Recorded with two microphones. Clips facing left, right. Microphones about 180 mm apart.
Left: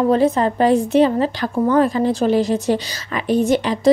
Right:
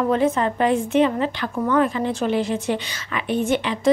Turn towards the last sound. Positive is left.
turn(degrees=40)  # may be behind; listen again after turning